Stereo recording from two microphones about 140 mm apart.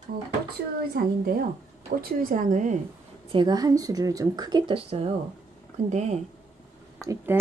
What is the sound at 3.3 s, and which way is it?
Speech, 35° right (ahead or behind).